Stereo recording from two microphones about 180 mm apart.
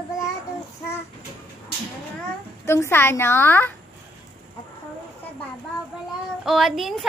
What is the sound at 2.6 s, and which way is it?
A woman's voice, 15° left (ahead or behind).